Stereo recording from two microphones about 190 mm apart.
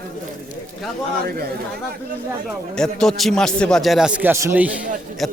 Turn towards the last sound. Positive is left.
turn(degrees=-10)  # may be behind; listen again after turning